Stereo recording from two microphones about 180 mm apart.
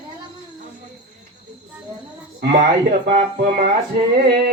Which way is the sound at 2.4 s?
45° right (ahead or behind).